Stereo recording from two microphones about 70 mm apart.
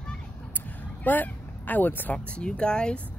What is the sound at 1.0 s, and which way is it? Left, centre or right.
Speech, left.